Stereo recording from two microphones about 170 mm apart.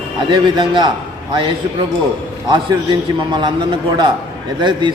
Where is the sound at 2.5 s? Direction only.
25° right (ahead or behind).